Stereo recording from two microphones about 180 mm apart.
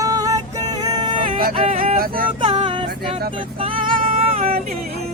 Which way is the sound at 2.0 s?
55° right (ahead or behind).